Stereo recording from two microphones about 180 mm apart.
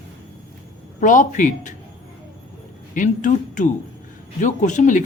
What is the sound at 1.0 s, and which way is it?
Speech, 45° left (ahead or behind).